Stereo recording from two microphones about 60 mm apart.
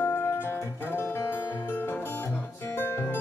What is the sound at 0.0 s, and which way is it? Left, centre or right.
Music, left.